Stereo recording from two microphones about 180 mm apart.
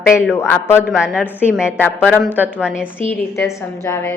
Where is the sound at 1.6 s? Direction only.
10° left (ahead or behind).